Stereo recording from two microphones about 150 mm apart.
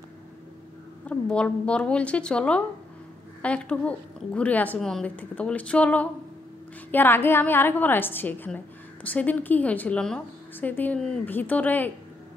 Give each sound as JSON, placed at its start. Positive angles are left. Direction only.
{"t": 1.0, "sound": "a woman's voice", "side_deg": 5}